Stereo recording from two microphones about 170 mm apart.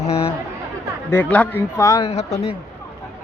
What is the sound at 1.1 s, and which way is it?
Speech, 10° left (ahead or behind).